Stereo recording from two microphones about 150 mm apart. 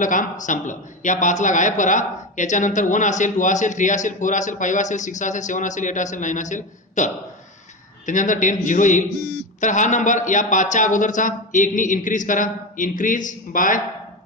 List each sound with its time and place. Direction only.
0.0 s a man's voice: 60° left (ahead or behind)